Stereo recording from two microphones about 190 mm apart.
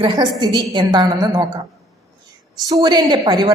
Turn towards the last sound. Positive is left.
turn(degrees=-20)  # may be behind; listen again after turning